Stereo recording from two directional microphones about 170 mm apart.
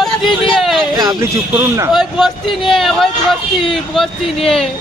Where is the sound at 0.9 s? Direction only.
25° right (ahead or behind).